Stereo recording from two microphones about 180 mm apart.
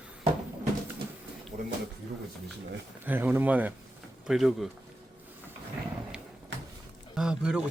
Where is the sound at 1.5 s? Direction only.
40° right (ahead or behind).